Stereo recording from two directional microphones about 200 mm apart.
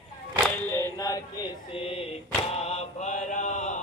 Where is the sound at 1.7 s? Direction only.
30° left (ahead or behind).